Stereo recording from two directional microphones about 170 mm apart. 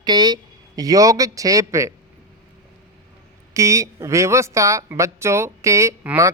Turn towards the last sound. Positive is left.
turn(degrees=-15)  # may be behind; listen again after turning